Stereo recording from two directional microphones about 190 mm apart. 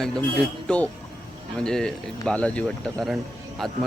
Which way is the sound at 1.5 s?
5° left (ahead or behind).